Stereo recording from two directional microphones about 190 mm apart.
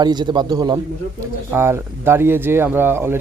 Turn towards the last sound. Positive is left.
turn(degrees=-10)  # may be behind; listen again after turning